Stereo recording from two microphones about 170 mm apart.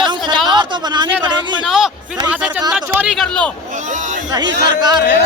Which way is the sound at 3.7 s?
45° right (ahead or behind).